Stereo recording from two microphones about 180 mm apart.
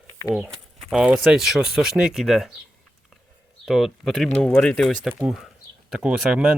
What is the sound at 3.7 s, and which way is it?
Speech, centre (ahead or behind).